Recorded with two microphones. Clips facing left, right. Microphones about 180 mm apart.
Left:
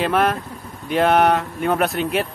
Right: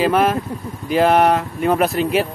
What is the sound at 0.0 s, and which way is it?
Speech, centre (ahead or behind).